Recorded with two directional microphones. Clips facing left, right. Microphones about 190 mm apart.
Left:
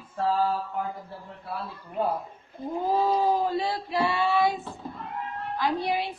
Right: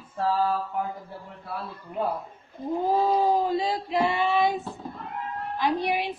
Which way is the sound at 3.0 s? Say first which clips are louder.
Right 1 dB; 15° right (ahead or behind).